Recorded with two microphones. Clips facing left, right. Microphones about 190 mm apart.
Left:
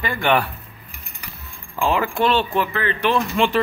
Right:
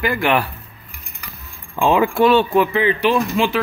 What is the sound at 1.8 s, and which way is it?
Speech, 15° right (ahead or behind).